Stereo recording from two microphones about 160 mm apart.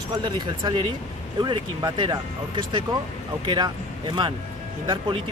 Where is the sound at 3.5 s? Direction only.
25° right (ahead or behind).